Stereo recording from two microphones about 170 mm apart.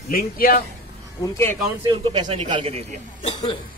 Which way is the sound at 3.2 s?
35° left (ahead or behind).